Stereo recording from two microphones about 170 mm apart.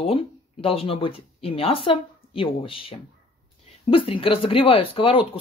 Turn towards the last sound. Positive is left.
turn(degrees=30)  # may be behind; listen again after turning